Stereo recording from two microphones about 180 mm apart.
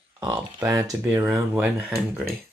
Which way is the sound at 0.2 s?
20° right (ahead or behind).